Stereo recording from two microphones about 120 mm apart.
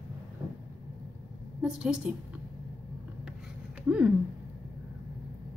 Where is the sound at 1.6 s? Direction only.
5° right (ahead or behind).